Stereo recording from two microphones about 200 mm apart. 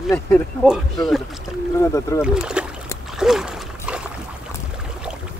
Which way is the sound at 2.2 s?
5° right (ahead or behind).